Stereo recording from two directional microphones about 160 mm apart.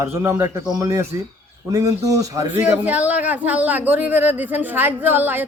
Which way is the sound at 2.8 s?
10° right (ahead or behind).